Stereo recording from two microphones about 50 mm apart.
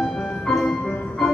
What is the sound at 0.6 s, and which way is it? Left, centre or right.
Music, centre.